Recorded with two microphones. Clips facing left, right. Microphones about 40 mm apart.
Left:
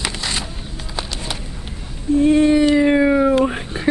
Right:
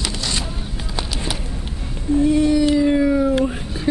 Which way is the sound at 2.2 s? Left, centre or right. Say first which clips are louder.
Left 3 dB; left.